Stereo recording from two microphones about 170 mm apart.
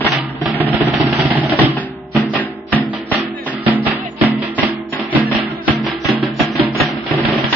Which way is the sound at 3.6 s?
10° right (ahead or behind).